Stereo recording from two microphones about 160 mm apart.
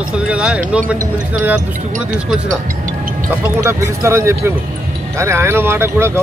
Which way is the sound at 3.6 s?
15° right (ahead or behind).